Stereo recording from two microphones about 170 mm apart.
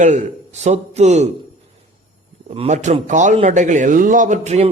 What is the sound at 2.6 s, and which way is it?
A man's voice, 40° right (ahead or behind).